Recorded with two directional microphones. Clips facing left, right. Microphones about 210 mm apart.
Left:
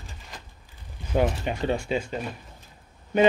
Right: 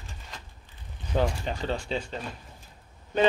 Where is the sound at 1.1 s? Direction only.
10° left (ahead or behind).